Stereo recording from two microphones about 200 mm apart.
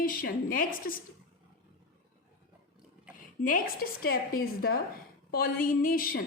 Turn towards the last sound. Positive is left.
turn(degrees=45)  # may be behind; listen again after turning